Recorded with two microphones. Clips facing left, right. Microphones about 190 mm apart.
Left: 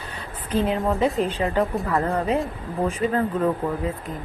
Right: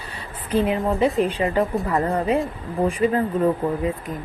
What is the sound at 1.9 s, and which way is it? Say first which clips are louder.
Speech: right 1 dB; 15° right (ahead or behind).